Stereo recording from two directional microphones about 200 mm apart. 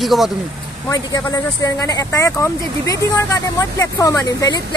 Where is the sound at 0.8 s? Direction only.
15° left (ahead or behind).